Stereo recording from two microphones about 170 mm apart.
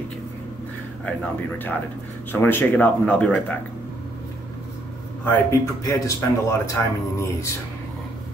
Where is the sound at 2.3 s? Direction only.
10° left (ahead or behind).